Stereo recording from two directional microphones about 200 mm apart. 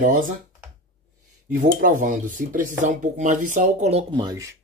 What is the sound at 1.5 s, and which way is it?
Speech, 40° right (ahead or behind).